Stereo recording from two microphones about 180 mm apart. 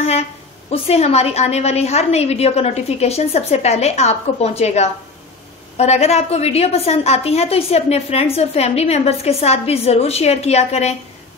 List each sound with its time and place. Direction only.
0.7 s a woman's voice: 35° left (ahead or behind)